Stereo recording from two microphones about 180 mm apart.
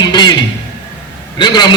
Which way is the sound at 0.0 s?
25° left (ahead or behind).